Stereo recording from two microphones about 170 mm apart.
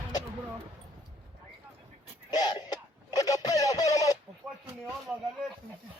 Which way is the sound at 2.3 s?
25° left (ahead or behind).